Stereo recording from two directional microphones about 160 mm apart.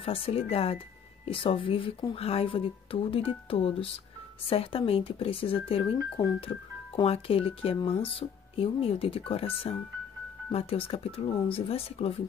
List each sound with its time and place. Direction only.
0.0 s speech: 35° left (ahead or behind)